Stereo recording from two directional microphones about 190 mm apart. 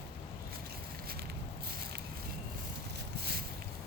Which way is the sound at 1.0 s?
55° right (ahead or behind).